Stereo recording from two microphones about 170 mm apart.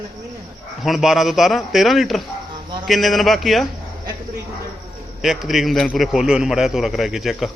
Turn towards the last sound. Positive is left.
turn(degrees=0)  # may be behind; listen again after turning